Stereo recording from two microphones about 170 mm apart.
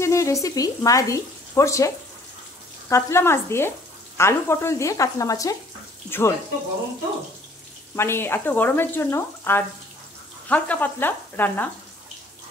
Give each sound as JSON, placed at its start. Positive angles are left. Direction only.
{"t": 0.0, "sound": "speech", "side_deg": 20}
{"t": 2.9, "sound": "speech", "side_deg": 15}
{"t": 7.9, "sound": "speech", "side_deg": 15}